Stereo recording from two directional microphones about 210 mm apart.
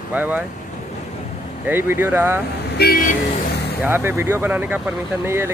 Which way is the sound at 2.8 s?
45° left (ahead or behind).